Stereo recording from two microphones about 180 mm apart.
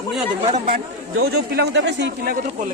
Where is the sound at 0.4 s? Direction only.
35° right (ahead or behind).